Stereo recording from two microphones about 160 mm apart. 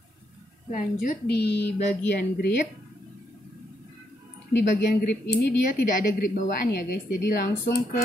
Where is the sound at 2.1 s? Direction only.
75° left (ahead or behind).